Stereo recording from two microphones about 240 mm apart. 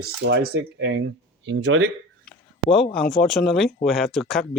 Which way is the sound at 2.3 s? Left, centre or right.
Centre.